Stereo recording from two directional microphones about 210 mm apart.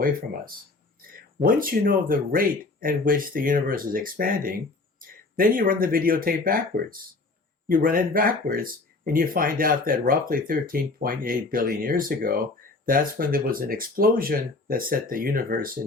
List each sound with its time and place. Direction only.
1.5 s speech: 40° right (ahead or behind)